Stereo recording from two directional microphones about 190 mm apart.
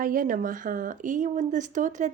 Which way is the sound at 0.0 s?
45° right (ahead or behind).